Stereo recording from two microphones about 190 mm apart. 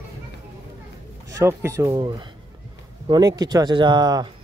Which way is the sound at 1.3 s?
15° right (ahead or behind).